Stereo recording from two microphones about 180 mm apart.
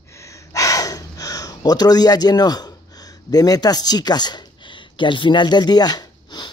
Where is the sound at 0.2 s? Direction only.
15° left (ahead or behind).